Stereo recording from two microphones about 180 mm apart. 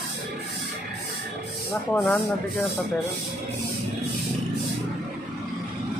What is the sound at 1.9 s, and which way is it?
Speech, 10° left (ahead or behind).